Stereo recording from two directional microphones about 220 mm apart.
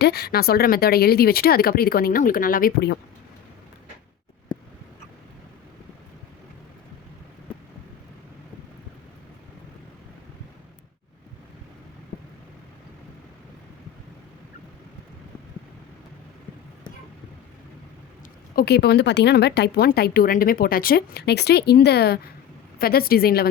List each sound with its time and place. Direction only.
0.0 s a woman's voice: 45° left (ahead or behind)
18.5 s a woman's voice: 45° left (ahead or behind)